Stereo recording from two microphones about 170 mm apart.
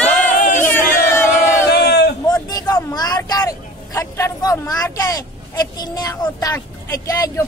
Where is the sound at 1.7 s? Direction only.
70° left (ahead or behind).